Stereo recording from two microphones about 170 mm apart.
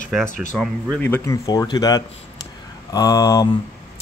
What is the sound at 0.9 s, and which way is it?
Speech, 10° left (ahead or behind).